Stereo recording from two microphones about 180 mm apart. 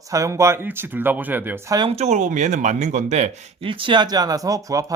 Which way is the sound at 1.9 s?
40° right (ahead or behind).